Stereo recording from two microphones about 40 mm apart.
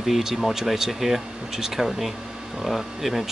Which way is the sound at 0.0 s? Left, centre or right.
Centre.